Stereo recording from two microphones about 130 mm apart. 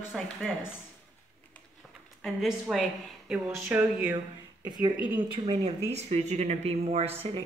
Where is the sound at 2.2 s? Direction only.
Centre (ahead or behind).